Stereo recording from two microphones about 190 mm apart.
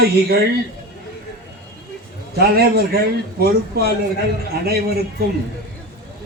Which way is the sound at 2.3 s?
55° right (ahead or behind).